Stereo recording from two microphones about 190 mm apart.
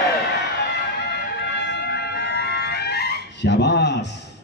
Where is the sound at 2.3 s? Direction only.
60° left (ahead or behind).